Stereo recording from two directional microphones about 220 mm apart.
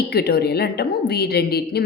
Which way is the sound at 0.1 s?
45° left (ahead or behind).